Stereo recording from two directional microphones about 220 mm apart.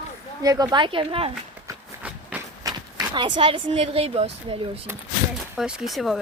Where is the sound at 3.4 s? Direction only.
25° right (ahead or behind).